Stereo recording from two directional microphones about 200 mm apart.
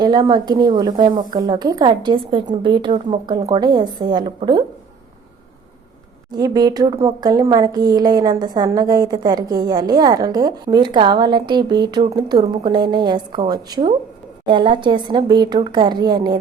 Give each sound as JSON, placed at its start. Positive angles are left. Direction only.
{"t": 0.0, "sound": "speech", "side_deg": -20}
{"t": 6.3, "sound": "speech", "side_deg": -20}